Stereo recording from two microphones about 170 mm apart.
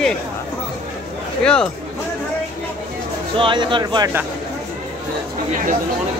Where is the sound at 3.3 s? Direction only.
30° right (ahead or behind).